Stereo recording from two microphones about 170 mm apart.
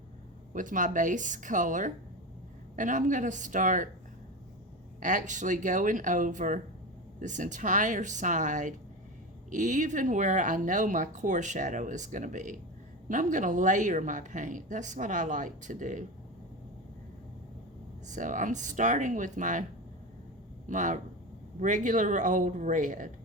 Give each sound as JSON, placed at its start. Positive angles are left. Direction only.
{"t": 0.5, "sound": "speech", "side_deg": -50}
{"t": 4.9, "sound": "speech", "side_deg": -50}
{"t": 18.1, "sound": "speech", "side_deg": -50}
{"t": 20.7, "sound": "speech", "side_deg": -45}